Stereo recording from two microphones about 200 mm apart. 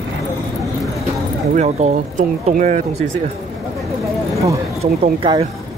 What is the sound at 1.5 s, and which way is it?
Speech, 35° right (ahead or behind).